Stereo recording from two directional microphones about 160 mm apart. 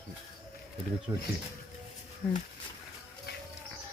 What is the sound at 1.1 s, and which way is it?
Speech, 20° right (ahead or behind).